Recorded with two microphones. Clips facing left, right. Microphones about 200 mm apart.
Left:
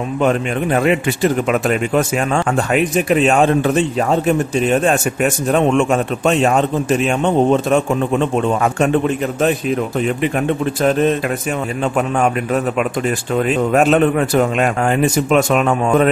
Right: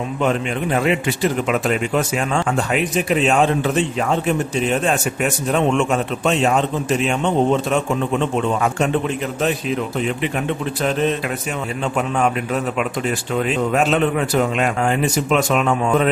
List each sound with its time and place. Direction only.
0.2 s a man's voice: 50° left (ahead or behind)
10.8 s a man's voice: 50° left (ahead or behind)
13.4 s a man's voice: 45° left (ahead or behind)